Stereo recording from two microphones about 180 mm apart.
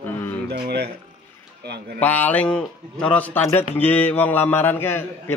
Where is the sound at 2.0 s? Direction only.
10° left (ahead or behind).